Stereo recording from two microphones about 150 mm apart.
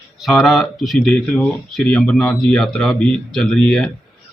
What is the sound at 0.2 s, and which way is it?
Speech, centre (ahead or behind).